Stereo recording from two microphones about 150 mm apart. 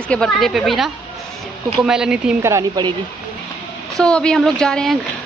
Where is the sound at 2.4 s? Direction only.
20° right (ahead or behind).